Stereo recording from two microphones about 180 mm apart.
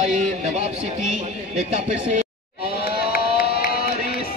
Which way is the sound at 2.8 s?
60° left (ahead or behind).